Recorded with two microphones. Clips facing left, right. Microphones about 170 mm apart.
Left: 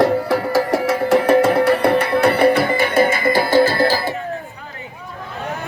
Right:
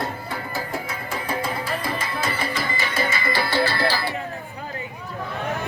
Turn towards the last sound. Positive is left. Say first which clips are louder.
# left 8 dB
turn(degrees=45)  # may be behind; listen again after turning